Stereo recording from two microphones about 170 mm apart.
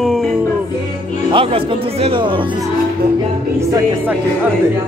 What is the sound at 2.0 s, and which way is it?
Speech, 30° right (ahead or behind).